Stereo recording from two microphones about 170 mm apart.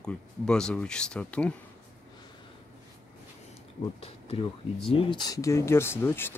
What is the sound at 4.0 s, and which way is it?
Speech, 35° left (ahead or behind).